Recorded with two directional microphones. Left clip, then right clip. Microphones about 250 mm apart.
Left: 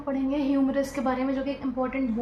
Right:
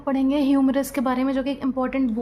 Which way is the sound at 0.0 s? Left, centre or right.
Right.